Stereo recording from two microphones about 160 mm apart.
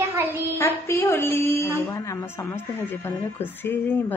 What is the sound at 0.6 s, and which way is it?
Speech, 15° left (ahead or behind).